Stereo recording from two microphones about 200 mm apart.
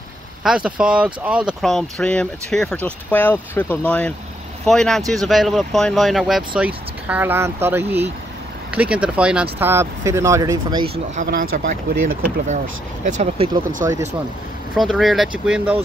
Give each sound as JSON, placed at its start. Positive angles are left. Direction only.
{"t": 0.4, "sound": "speech", "side_deg": -5}
{"t": 11.5, "sound": "speech", "side_deg": -45}
{"t": 14.7, "sound": "speech", "side_deg": 0}